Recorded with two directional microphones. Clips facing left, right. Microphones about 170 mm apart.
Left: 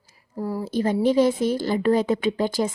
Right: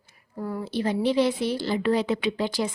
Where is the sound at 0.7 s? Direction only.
45° left (ahead or behind).